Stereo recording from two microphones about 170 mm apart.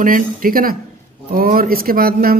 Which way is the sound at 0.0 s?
55° right (ahead or behind).